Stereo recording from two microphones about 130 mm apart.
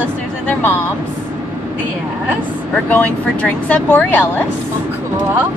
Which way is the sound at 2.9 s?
10° left (ahead or behind).